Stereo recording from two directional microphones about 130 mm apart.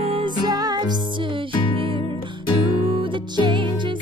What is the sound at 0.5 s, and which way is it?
Music, 30° right (ahead or behind).